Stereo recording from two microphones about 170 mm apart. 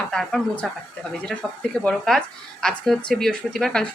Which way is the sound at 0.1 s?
5° left (ahead or behind).